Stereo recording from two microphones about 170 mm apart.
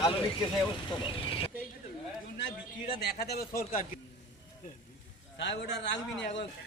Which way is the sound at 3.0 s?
70° left (ahead or behind).